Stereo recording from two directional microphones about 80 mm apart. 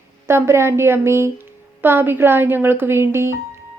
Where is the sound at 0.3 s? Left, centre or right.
Right.